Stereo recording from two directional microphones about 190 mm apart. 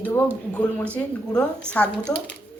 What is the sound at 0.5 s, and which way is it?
A woman's voice, 5° left (ahead or behind).